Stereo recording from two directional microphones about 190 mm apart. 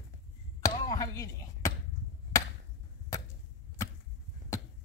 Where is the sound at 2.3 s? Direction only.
15° left (ahead or behind).